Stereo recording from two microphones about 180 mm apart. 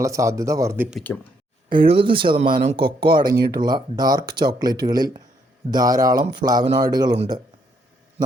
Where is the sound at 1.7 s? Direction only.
30° right (ahead or behind).